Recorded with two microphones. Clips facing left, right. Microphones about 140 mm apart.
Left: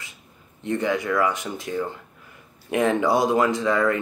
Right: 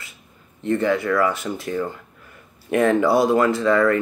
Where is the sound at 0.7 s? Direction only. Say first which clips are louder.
Right 4 dB; 15° left (ahead or behind).